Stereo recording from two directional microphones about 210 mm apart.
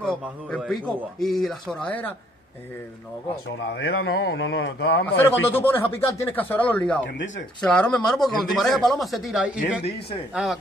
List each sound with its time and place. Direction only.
0.1 s speech: centre (ahead or behind)
3.7 s mantra: 55° left (ahead or behind)
5.0 s speech: 10° left (ahead or behind)